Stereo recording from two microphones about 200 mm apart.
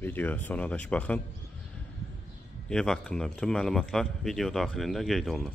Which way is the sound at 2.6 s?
5° left (ahead or behind).